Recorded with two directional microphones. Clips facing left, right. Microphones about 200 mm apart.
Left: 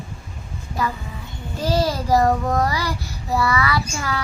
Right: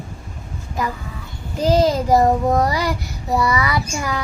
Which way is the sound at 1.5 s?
20° right (ahead or behind).